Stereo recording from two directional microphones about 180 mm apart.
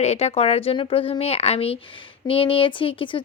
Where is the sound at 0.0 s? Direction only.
35° left (ahead or behind).